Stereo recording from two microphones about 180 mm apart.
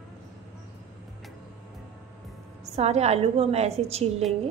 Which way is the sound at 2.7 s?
35° right (ahead or behind).